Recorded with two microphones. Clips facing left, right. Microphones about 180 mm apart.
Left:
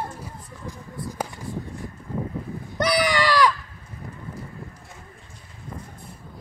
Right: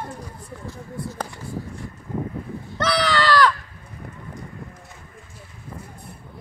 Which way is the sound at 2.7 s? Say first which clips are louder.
Even; 15° left (ahead or behind).